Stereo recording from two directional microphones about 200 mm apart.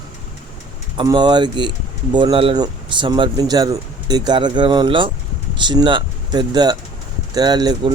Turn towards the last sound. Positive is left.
turn(degrees=-20)  # may be behind; listen again after turning